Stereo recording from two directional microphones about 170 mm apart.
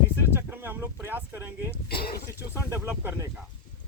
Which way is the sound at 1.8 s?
65° left (ahead or behind).